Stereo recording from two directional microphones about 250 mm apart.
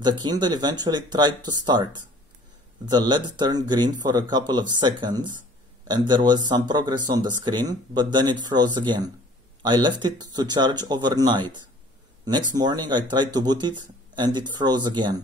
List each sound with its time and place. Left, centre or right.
0.0 s speech: centre